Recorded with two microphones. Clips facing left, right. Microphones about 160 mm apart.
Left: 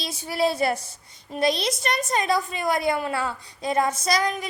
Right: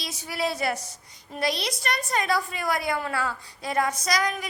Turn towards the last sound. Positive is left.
turn(degrees=25)  # may be behind; listen again after turning